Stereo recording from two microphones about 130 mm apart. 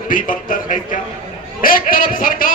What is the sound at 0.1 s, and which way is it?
A man's voice, 90° left.